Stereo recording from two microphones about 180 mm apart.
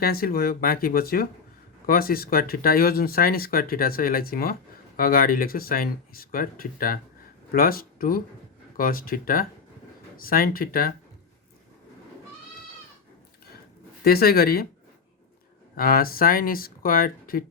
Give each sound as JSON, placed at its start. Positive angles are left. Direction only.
{"t": 0.0, "sound": "speech", "side_deg": 55}
{"t": 14.0, "sound": "speech", "side_deg": 60}
{"t": 15.7, "sound": "speech", "side_deg": 55}